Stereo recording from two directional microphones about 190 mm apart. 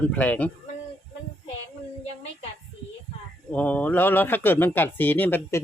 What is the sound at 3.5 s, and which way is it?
Speech, 10° left (ahead or behind).